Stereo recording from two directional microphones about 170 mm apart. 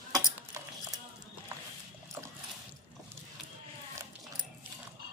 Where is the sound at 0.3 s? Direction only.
15° right (ahead or behind).